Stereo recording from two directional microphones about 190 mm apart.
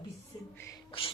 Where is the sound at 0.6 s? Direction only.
15° left (ahead or behind).